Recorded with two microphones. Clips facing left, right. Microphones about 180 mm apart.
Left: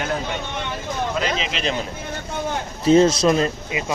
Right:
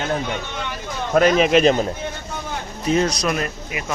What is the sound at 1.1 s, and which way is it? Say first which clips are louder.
Speech: right 15 dB; 55° right (ahead or behind).